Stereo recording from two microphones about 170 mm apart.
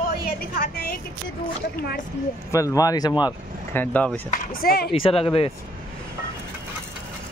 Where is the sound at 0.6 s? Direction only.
70° left (ahead or behind).